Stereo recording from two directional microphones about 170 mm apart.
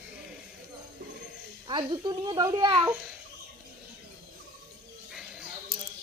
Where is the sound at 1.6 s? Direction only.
25° right (ahead or behind).